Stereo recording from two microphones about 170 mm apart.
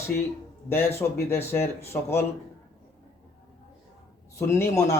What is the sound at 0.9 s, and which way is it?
Speech, 15° left (ahead or behind).